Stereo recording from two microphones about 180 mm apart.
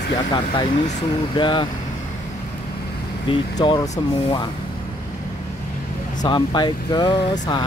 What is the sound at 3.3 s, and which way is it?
Speech, 30° left (ahead or behind).